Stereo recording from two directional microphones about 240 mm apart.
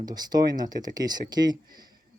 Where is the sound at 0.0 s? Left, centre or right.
Centre.